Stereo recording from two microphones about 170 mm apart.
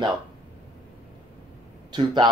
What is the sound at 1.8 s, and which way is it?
Speech, 25° right (ahead or behind).